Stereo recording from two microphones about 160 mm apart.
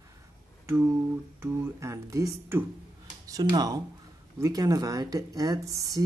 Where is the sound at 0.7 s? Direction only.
15° right (ahead or behind).